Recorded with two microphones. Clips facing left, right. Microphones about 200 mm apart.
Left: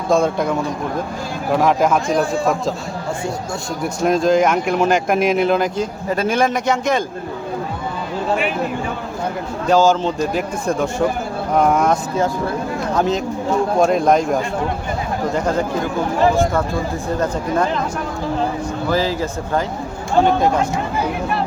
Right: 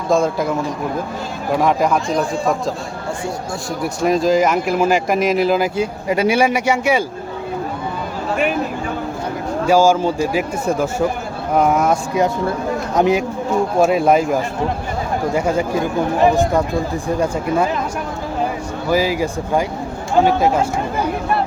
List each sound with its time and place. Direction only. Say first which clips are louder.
0.1 s speech: even; centre (ahead or behind)
4.0 s speech: even; centre (ahead or behind)
9.6 s a man's voice: right 1 dB; 10° right (ahead or behind)
12.9 s a man's voice: right 3 dB; 15° right (ahead or behind)
18.9 s a man's voice: right 3 dB; 10° right (ahead or behind)